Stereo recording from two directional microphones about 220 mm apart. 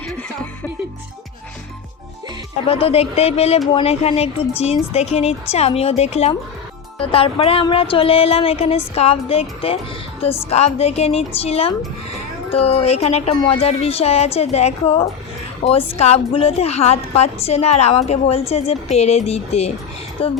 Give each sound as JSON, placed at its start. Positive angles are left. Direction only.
{"t": 2.6, "sound": "a woman's voice", "side_deg": 25}